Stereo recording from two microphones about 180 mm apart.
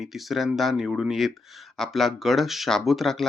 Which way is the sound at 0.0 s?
Centre (ahead or behind).